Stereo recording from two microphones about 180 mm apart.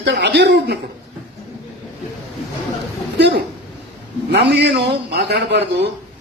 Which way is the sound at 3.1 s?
70° right (ahead or behind).